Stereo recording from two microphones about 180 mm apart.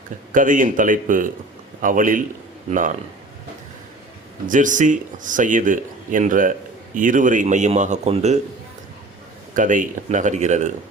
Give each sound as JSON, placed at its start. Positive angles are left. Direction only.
{"t": 0.3, "sound": "speech", "side_deg": -45}
{"t": 4.4, "sound": "speech", "side_deg": -45}
{"t": 9.6, "sound": "speech", "side_deg": -45}